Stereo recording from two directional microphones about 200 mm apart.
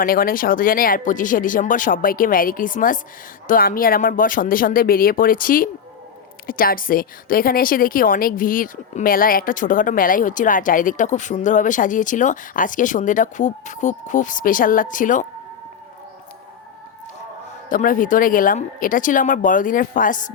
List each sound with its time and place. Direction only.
0.0 s a woman's voice: 45° left (ahead or behind)
17.7 s a woman's voice: 40° left (ahead or behind)